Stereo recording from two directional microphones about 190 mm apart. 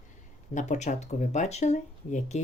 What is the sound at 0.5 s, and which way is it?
Speech, 40° left (ahead or behind).